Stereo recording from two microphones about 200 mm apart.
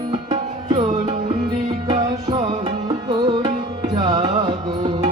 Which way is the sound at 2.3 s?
25° right (ahead or behind).